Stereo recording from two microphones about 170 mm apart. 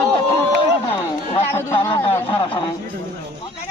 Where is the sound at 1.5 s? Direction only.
15° left (ahead or behind).